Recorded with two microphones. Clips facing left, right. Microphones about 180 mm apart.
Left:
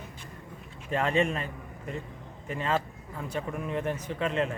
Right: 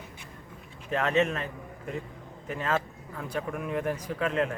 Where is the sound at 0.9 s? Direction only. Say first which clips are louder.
Right 1 dB; 5° right (ahead or behind).